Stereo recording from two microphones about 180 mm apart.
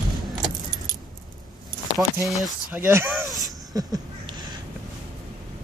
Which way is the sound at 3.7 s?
20° right (ahead or behind).